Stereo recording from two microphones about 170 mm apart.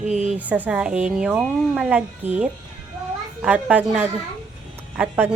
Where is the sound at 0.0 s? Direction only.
40° right (ahead or behind).